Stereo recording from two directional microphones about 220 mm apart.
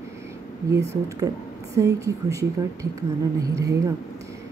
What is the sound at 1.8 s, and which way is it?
A woman's voice, 15° right (ahead or behind).